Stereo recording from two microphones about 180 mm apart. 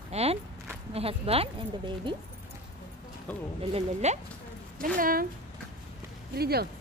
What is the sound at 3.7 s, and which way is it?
Speech, 40° right (ahead or behind).